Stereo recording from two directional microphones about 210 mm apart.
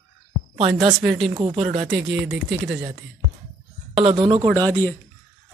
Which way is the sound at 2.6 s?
Centre (ahead or behind).